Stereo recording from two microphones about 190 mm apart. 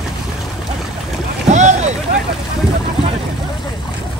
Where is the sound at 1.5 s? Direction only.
40° right (ahead or behind).